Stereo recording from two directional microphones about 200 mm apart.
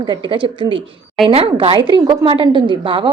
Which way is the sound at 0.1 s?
25° right (ahead or behind).